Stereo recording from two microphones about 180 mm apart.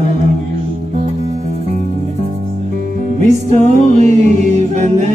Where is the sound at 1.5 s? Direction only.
40° right (ahead or behind).